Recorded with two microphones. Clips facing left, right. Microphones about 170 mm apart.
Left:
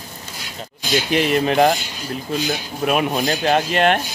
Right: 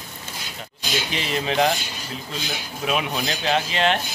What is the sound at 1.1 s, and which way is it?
Speech, 55° left (ahead or behind).